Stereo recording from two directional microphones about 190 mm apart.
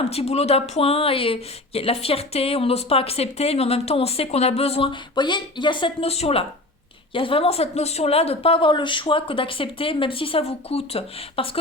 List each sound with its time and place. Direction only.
0.0 s speech: 35° left (ahead or behind)